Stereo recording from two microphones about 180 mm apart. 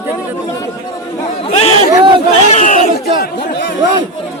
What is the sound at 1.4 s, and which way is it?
Speech, 35° left (ahead or behind).